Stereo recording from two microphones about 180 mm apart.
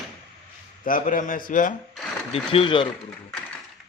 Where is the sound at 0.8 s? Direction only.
50° left (ahead or behind).